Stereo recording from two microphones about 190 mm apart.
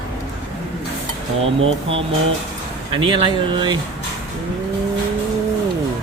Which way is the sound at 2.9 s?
25° right (ahead or behind).